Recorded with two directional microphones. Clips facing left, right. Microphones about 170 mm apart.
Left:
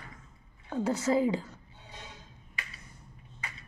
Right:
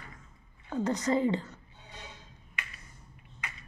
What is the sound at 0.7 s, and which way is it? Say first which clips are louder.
Speech: left 1 dB; 5° left (ahead or behind).